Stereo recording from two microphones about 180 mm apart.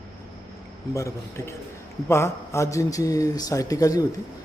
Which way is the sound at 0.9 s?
15° left (ahead or behind).